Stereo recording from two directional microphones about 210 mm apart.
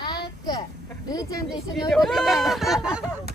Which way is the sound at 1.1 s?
15° left (ahead or behind).